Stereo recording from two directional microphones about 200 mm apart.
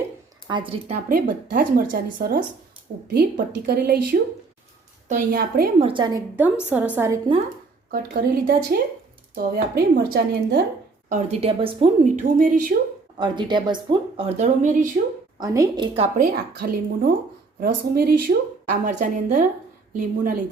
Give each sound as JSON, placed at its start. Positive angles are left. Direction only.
{"t": 0.4, "sound": "speech", "side_deg": -25}
{"t": 1.0, "sound": "a woman's voice", "side_deg": -45}
{"t": 5.8, "sound": "speech", "side_deg": -25}
{"t": 6.3, "sound": "a woman's voice", "side_deg": -10}
{"t": 7.9, "sound": "a woman's voice", "side_deg": -45}
{"t": 11.1, "sound": "speech", "side_deg": -30}
{"t": 12.0, "sound": "a woman's voice", "side_deg": -40}
{"t": 13.1, "sound": "speech", "side_deg": -20}
{"t": 15.4, "sound": "speech", "side_deg": -15}
{"t": 16.1, "sound": "a woman's voice", "side_deg": -50}